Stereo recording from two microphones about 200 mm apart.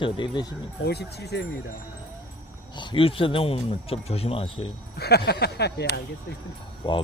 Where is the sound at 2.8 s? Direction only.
25° left (ahead or behind).